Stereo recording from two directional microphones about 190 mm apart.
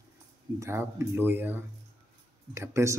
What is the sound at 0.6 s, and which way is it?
Speech, 15° right (ahead or behind).